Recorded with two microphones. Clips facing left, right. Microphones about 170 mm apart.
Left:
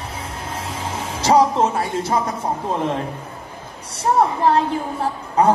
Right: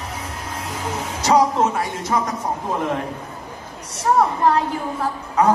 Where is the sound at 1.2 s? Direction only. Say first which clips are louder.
Left 1 dB; 30° left (ahead or behind).